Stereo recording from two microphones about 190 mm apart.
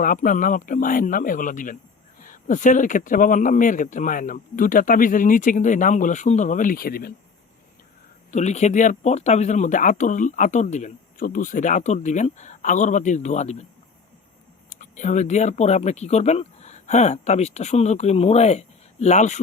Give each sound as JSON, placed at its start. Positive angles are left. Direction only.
{"t": 0.0, "sound": "speech", "side_deg": 45}
{"t": 8.3, "sound": "speech", "side_deg": 35}
{"t": 14.7, "sound": "speech", "side_deg": 40}